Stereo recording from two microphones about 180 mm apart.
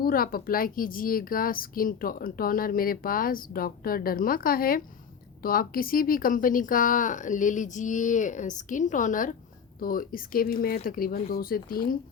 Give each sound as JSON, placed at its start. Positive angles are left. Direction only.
{"t": 0.0, "sound": "a woman's voice", "side_deg": 55}